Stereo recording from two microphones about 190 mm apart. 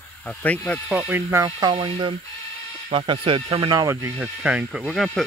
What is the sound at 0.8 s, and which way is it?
Speech, 5° right (ahead or behind).